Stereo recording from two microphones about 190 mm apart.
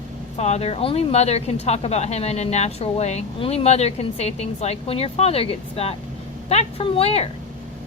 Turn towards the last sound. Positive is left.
turn(degrees=30)  # may be behind; listen again after turning